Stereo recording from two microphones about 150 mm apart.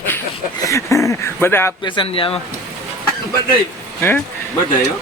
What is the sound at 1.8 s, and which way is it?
Speech, 35° left (ahead or behind).